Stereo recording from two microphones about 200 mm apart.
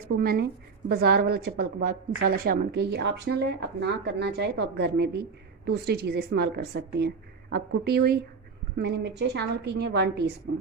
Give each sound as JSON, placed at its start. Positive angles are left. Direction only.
{"t": 0.1, "sound": "a woman's voice", "side_deg": -50}